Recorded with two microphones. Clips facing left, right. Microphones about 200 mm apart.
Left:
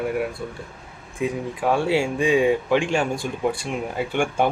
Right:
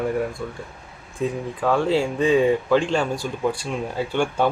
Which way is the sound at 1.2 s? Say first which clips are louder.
Even; 15° left (ahead or behind).